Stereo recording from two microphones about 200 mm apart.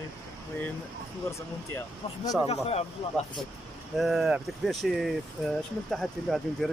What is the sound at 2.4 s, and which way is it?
Speech, 30° left (ahead or behind).